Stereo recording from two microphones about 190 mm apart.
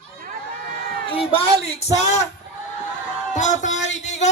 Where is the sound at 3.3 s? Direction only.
40° left (ahead or behind).